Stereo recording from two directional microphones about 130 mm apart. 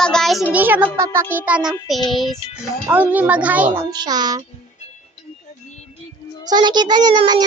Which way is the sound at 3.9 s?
30° right (ahead or behind).